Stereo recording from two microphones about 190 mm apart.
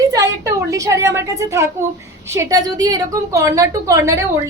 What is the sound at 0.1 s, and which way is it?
A woman's voice, 20° right (ahead or behind).